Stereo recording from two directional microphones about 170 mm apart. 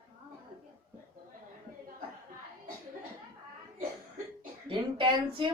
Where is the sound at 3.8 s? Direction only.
55° right (ahead or behind).